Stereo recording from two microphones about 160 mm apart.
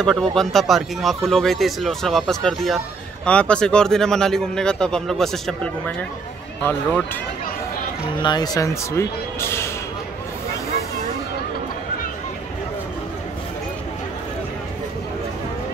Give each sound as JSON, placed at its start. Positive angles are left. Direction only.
{"t": 0.0, "sound": "a man's voice", "side_deg": 5}
{"t": 8.2, "sound": "speech", "side_deg": 25}